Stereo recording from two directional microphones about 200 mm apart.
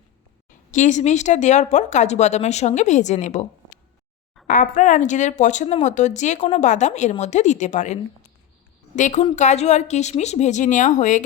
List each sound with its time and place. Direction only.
0.7 s speech: 40° left (ahead or behind)
4.4 s speech: 40° left (ahead or behind)
9.0 s speech: 40° left (ahead or behind)